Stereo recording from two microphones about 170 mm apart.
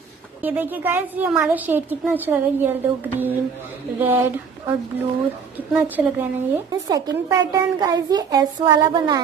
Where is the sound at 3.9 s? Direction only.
10° right (ahead or behind).